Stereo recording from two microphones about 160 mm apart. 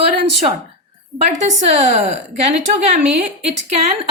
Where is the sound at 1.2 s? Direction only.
45° right (ahead or behind).